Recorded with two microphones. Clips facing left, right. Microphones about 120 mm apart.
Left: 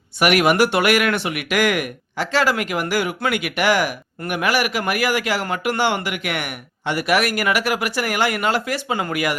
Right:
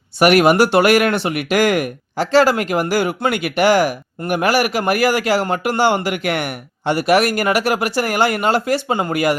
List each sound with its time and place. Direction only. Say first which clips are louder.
0.2 s a man's voice: right 4 dB; 35° right (ahead or behind)